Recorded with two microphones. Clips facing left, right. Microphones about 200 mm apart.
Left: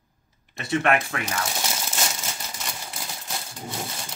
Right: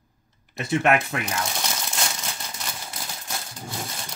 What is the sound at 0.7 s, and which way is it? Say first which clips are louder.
Speech: right 1 dB; 20° right (ahead or behind).